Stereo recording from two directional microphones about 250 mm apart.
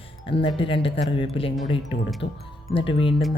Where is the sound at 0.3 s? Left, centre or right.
Left.